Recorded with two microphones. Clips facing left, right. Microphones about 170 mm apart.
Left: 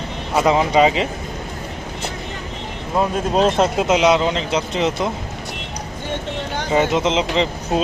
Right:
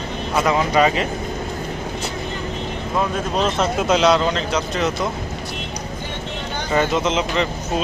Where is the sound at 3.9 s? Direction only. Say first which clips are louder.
Right 2 dB; 15° left (ahead or behind).